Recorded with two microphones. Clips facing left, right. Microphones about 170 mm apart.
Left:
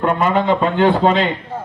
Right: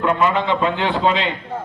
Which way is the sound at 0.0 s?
45° left (ahead or behind).